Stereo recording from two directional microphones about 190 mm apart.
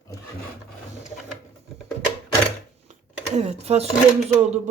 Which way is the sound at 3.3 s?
35° right (ahead or behind).